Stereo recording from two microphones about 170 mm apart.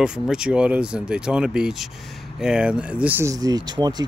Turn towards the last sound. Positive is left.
turn(degrees=-25)  # may be behind; listen again after turning